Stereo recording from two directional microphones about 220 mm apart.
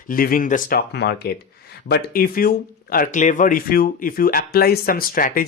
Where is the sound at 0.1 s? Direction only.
40° left (ahead or behind).